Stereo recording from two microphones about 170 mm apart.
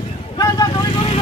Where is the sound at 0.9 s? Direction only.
35° left (ahead or behind).